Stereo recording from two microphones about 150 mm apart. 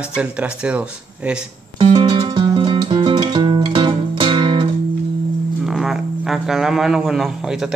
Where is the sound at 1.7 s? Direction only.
35° right (ahead or behind).